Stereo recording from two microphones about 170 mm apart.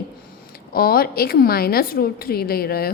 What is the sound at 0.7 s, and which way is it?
A woman's voice, 60° left (ahead or behind).